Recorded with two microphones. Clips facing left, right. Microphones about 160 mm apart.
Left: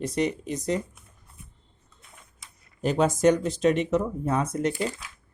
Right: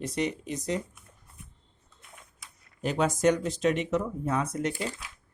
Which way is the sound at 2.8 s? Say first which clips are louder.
Left 4 dB; 35° left (ahead or behind).